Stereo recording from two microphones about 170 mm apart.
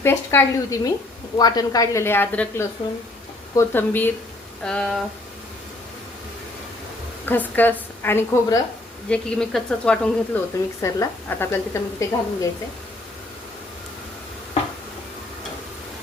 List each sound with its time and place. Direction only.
0.0 s a woman's voice: 15° left (ahead or behind)
7.3 s a woman's voice: 10° left (ahead or behind)
9.0 s speech: 5° left (ahead or behind)
10.8 s a woman's voice: 20° left (ahead or behind)